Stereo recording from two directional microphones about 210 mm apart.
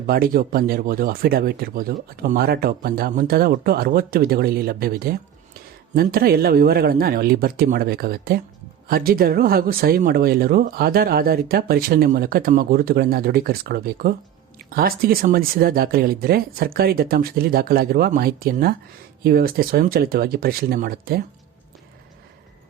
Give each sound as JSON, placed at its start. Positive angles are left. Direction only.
{"t": 0.1, "sound": "speech", "side_deg": -45}